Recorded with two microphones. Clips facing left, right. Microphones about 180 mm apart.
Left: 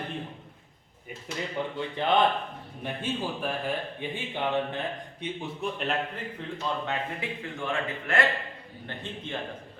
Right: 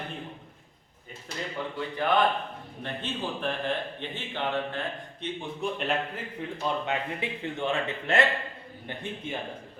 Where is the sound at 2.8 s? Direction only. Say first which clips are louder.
Left 2 dB; 10° left (ahead or behind).